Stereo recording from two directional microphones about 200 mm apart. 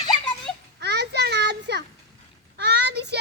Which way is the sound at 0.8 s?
55° right (ahead or behind).